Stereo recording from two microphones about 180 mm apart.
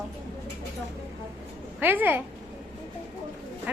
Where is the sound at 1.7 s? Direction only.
10° right (ahead or behind).